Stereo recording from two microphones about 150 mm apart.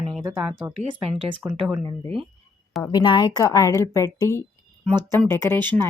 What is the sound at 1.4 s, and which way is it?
Speech, 5° right (ahead or behind).